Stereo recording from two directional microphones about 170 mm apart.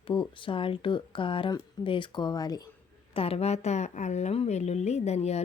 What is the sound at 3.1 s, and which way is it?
Speech, 35° left (ahead or behind).